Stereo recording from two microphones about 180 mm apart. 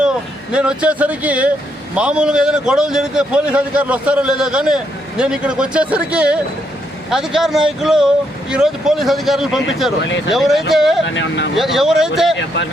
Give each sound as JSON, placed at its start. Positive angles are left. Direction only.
{"t": 0.0, "sound": "a man's voice", "side_deg": -5}
{"t": 11.0, "sound": "speech", "side_deg": 90}
{"t": 11.5, "sound": "a man's voice", "side_deg": 0}